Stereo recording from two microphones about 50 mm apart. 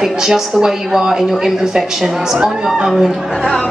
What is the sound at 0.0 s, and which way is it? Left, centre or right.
A woman's voice, centre.